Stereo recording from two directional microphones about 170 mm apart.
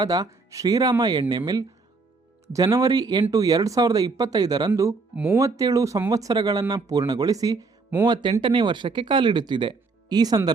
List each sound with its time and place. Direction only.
0.0 s speech: 20° right (ahead or behind)
8.0 s speech: 25° right (ahead or behind)